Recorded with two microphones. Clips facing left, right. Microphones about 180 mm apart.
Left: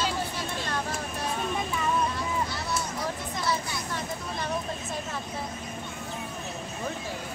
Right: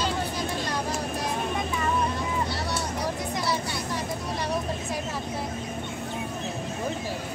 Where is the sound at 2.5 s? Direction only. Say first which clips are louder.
Right 2 dB; 30° right (ahead or behind).